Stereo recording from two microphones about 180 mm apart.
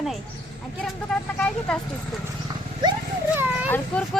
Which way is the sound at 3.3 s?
10° right (ahead or behind).